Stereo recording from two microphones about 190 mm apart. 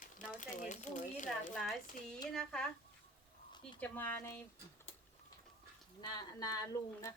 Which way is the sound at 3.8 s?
10° left (ahead or behind).